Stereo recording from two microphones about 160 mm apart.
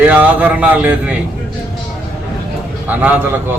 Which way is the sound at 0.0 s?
10° right (ahead or behind).